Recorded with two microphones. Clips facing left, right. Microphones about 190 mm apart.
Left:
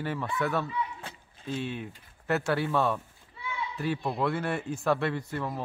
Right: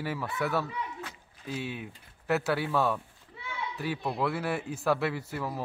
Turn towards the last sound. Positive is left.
turn(degrees=-5)  # may be behind; listen again after turning